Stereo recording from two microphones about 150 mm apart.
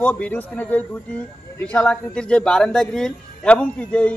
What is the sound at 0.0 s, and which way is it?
Speech, 10° left (ahead or behind).